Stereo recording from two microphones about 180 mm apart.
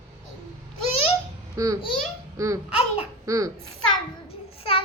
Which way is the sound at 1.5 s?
20° right (ahead or behind).